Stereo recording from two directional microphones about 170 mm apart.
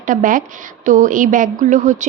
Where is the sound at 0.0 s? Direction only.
50° right (ahead or behind).